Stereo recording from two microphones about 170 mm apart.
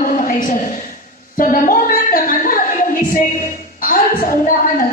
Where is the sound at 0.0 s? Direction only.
55° left (ahead or behind).